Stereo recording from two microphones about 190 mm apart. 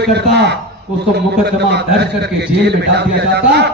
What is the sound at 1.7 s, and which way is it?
A man's voice, 60° right (ahead or behind).